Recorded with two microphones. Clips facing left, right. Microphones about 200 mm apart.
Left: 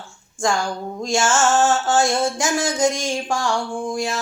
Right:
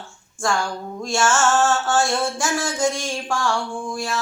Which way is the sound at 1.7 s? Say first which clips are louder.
Left 2 dB; 20° left (ahead or behind).